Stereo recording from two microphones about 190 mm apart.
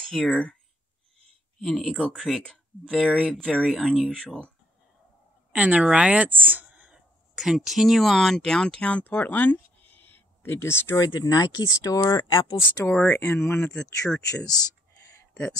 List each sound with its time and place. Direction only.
0.0 s speech: centre (ahead or behind)
1.6 s speech: centre (ahead or behind)
5.5 s speech: 10° right (ahead or behind); by 13.7 s 15° left (ahead or behind)
13.7 s speech: 5° left (ahead or behind)